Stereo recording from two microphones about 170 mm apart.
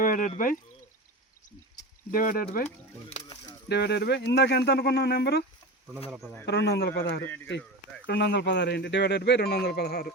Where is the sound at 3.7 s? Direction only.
80° left.